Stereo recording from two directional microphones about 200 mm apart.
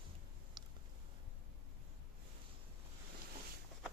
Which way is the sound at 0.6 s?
20° right (ahead or behind).